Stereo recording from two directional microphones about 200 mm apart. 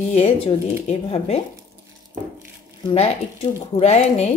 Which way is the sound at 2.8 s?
30° left (ahead or behind).